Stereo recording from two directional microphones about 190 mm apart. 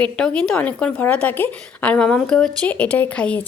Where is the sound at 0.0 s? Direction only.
5° left (ahead or behind).